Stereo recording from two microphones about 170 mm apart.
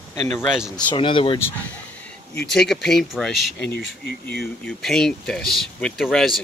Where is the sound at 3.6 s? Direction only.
70° left (ahead or behind).